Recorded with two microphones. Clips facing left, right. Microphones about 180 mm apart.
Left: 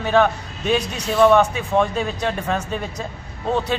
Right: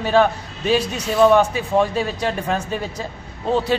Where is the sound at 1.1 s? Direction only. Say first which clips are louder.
Even; 5° right (ahead or behind).